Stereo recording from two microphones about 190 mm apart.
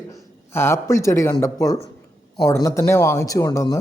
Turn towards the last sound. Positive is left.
turn(degrees=15)  # may be behind; listen again after turning